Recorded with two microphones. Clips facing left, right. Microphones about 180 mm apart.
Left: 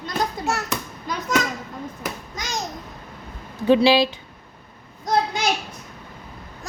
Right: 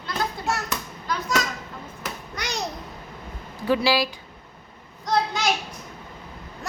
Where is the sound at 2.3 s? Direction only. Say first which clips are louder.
Right 3 dB; 65° right (ahead or behind).